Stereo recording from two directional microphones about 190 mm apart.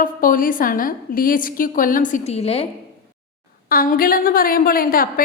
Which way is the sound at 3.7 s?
50° left (ahead or behind).